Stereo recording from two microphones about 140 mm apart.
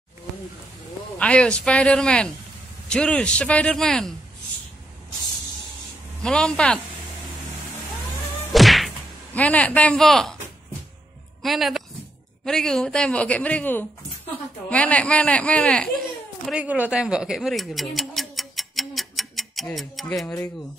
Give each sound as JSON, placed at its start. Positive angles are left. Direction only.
{"t": 1.1, "sound": "a woman's voice", "side_deg": 10}
{"t": 6.2, "sound": "speech", "side_deg": 5}
{"t": 8.5, "sound": "insect", "side_deg": 0}
{"t": 9.3, "sound": "a woman's voice", "side_deg": 10}
{"t": 11.4, "sound": "a woman's voice", "side_deg": 0}
{"t": 16.5, "sound": "speech", "side_deg": -10}